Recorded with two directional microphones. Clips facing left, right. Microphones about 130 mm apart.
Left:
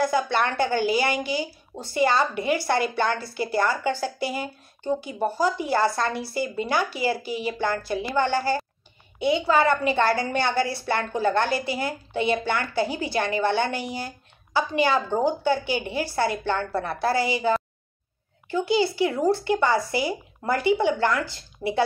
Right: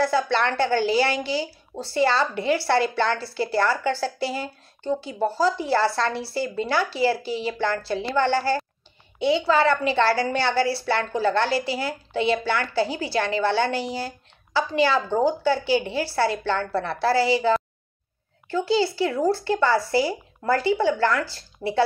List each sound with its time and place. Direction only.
0.0 s a woman's voice: 15° left (ahead or behind)